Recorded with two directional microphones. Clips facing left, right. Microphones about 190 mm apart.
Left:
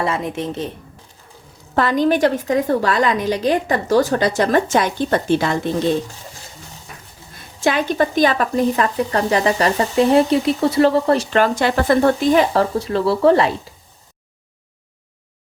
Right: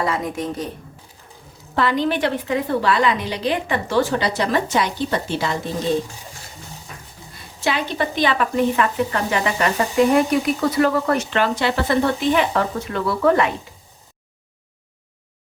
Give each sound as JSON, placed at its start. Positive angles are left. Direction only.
{"t": 0.0, "sound": "a woman's voice", "side_deg": 25}
{"t": 1.7, "sound": "a woman's voice", "side_deg": 45}
{"t": 7.6, "sound": "speech", "side_deg": 50}